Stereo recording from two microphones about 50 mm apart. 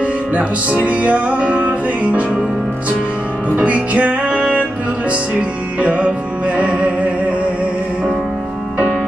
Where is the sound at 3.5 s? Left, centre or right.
Right.